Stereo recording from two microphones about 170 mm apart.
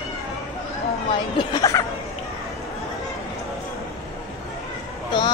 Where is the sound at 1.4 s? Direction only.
25° left (ahead or behind).